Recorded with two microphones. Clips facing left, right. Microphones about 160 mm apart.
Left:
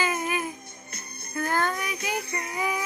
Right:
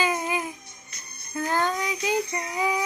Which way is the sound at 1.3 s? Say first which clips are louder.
Right 1 dB; 15° right (ahead or behind).